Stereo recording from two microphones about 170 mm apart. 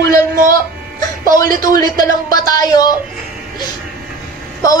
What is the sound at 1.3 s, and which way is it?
Speech, 50° right (ahead or behind).